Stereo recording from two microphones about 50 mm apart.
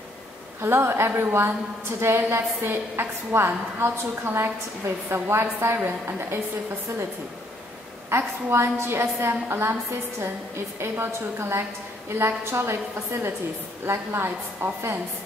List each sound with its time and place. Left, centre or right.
0.6 s a woman's voice: right
8.1 s a woman's voice: right
10.8 s a woman's voice: right
13.8 s a woman's voice: right